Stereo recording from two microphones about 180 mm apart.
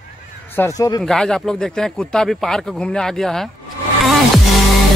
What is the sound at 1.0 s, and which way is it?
Speech, 5° left (ahead or behind).